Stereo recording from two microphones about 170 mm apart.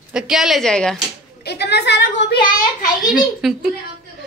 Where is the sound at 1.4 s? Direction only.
75° left (ahead or behind).